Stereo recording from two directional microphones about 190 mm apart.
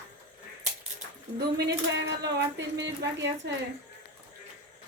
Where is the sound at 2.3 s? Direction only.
65° right (ahead or behind).